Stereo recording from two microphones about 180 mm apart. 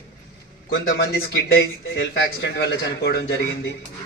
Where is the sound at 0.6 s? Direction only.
55° left (ahead or behind).